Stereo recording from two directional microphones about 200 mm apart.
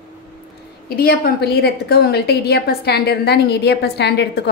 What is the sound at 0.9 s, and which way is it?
A woman's voice, 50° left (ahead or behind).